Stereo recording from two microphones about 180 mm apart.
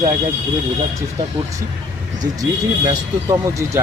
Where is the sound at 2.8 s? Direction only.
15° right (ahead or behind).